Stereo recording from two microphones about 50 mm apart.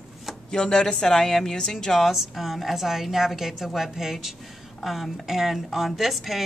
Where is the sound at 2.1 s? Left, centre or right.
Centre.